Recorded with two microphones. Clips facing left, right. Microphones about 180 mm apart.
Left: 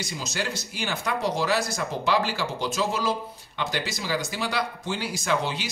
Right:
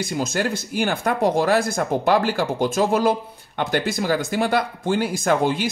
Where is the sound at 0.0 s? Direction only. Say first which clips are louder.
Right 8 dB; 55° right (ahead or behind).